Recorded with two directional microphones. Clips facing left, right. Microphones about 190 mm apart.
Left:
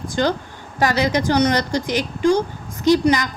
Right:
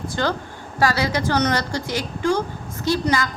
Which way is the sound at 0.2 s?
20° left (ahead or behind).